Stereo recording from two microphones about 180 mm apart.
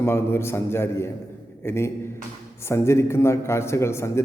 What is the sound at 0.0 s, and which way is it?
A man's voice, 15° left (ahead or behind).